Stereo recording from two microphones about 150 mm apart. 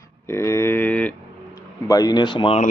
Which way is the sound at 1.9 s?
25° left (ahead or behind).